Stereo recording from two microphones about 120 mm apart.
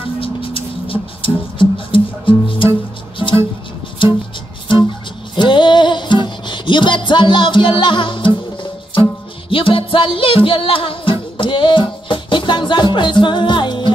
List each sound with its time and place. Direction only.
0.2 s music: 50° left (ahead or behind)
4.0 s music: 45° left (ahead or behind)
5.3 s music: 40° left (ahead or behind)
9.5 s music: 45° left (ahead or behind)